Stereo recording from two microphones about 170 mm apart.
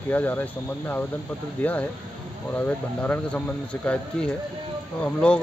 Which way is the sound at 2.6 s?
10° left (ahead or behind).